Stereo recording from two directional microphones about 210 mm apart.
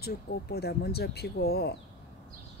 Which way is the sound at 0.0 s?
50° left (ahead or behind).